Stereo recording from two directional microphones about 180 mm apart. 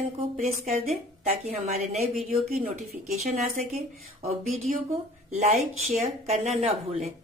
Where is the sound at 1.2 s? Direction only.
35° right (ahead or behind).